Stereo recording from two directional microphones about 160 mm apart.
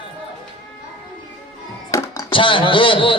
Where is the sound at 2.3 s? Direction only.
30° left (ahead or behind).